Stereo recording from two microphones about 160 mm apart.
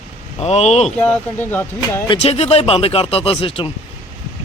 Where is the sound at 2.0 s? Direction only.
40° left (ahead or behind).